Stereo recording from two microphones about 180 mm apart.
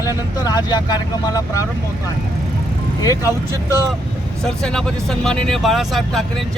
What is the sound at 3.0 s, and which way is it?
Speech, 20° left (ahead or behind).